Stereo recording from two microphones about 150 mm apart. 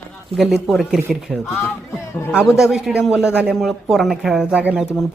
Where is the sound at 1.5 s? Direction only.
15° left (ahead or behind).